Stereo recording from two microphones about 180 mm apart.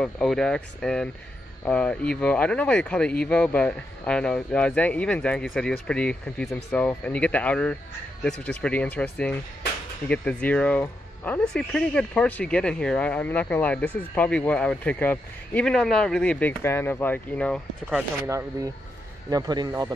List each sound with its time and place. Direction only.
0.0 s speech: 5° left (ahead or behind)
17.9 s speech: 15° right (ahead or behind)